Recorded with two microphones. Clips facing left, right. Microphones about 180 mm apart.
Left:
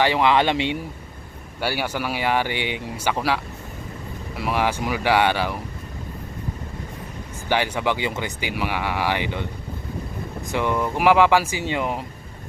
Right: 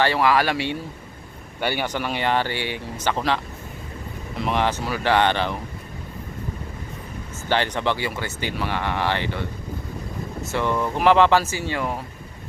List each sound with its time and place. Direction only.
0.0 s speech: 20° left (ahead or behind)
1.6 s speech: 5° left (ahead or behind)
7.5 s speech: 10° left (ahead or behind)
10.5 s speech: 15° left (ahead or behind)